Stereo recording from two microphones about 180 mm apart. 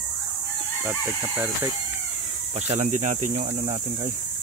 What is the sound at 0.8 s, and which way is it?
Speech, 10° right (ahead or behind).